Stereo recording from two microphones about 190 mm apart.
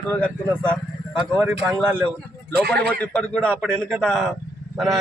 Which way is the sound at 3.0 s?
5° left (ahead or behind).